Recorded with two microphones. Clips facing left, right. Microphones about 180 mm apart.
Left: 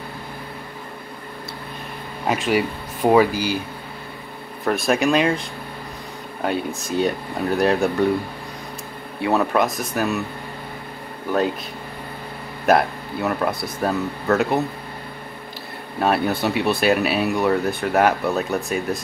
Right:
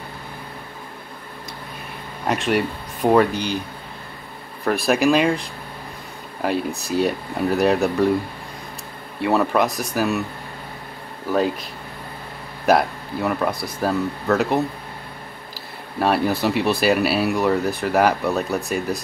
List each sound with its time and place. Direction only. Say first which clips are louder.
2.2 s speech: even; centre (ahead or behind)
4.6 s speech: right 1 dB; centre (ahead or behind)
9.2 s speech: even; centre (ahead or behind)
12.6 s speech: even; centre (ahead or behind)
16.0 s speech: right 1 dB; centre (ahead or behind)